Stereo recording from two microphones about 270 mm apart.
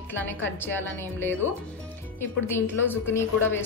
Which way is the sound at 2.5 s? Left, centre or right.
Centre.